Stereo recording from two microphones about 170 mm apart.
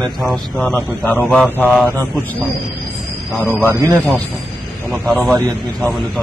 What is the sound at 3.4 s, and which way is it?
Speech, 15° right (ahead or behind).